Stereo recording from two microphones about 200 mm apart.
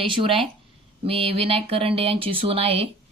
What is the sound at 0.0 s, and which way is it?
Speech, 25° right (ahead or behind).